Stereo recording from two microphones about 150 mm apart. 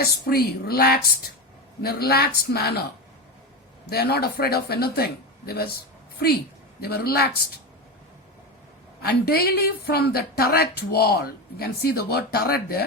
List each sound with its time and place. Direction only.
0.0 s a woman's voice: 90° left
3.8 s a woman's voice: 90° left
9.0 s a woman's voice: 90° left